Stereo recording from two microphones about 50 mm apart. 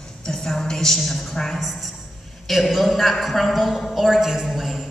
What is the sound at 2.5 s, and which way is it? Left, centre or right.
A woman's voice, centre.